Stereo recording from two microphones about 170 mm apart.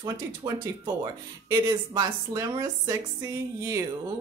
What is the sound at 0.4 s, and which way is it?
Speech, 25° right (ahead or behind).